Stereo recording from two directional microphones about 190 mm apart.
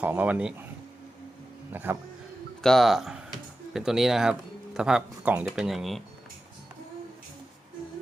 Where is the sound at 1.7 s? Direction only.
10° right (ahead or behind).